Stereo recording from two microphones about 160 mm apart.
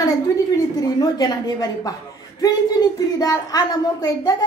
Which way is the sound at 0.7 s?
25° left (ahead or behind).